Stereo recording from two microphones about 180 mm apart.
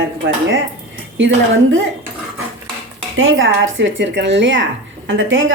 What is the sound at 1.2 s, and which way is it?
Speech, 90° right.